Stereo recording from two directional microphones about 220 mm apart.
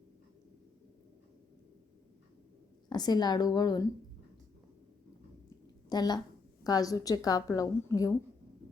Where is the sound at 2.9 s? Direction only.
20° left (ahead or behind).